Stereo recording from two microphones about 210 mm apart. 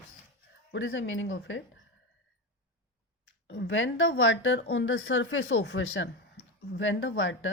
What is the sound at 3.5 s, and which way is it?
Speech, 65° left (ahead or behind).